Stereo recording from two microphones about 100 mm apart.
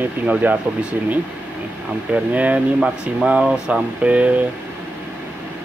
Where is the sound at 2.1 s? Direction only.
15° right (ahead or behind).